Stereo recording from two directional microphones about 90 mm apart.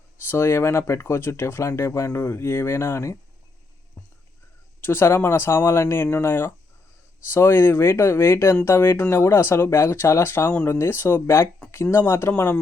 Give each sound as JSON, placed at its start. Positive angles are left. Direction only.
{"t": 0.3, "sound": "speech", "side_deg": 25}
{"t": 4.8, "sound": "speech", "side_deg": 25}